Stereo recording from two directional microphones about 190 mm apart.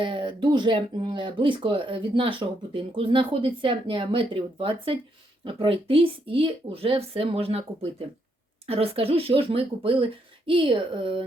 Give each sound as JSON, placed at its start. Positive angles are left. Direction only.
{"t": 0.0, "sound": "speech", "side_deg": -25}